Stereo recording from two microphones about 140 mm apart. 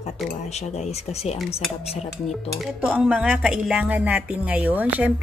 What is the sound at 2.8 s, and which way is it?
A woman's voice, 10° right (ahead or behind).